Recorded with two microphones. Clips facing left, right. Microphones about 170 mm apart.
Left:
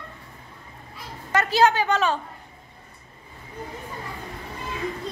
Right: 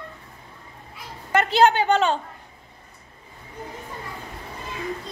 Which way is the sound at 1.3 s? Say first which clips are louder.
Right 2 dB; 30° right (ahead or behind).